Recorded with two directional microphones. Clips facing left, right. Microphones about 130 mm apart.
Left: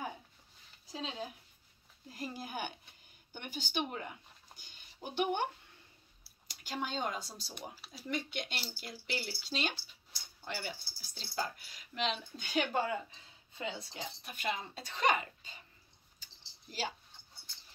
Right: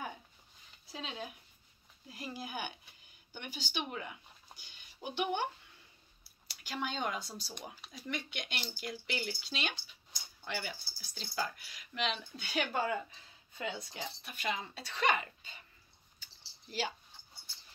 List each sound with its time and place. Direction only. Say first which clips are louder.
0.8 s a woman's voice: left 2 dB; 35° left (ahead or behind)
13.6 s speech: right 1 dB; 30° left (ahead or behind)